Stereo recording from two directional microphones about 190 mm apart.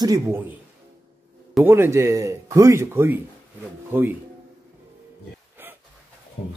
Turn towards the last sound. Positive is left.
turn(degrees=-10)  # may be behind; listen again after turning